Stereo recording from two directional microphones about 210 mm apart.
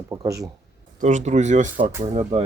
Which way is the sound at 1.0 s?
35° right (ahead or behind).